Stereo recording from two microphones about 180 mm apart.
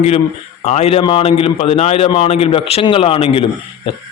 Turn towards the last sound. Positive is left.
turn(degrees=30)  # may be behind; listen again after turning